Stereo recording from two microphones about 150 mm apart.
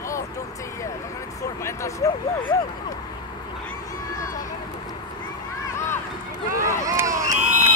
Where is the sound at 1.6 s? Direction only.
20° left (ahead or behind).